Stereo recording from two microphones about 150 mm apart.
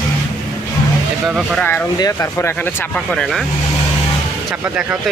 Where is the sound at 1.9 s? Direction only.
20° left (ahead or behind).